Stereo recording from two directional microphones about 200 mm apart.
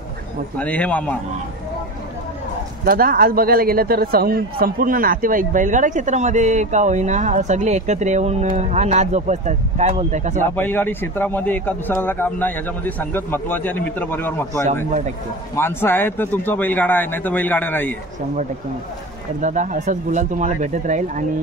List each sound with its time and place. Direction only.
0.6 s a man's voice: 5° left (ahead or behind)
2.8 s speech: 45° right (ahead or behind)
10.4 s a man's voice: 10° left (ahead or behind)
19.4 s speech: 40° right (ahead or behind)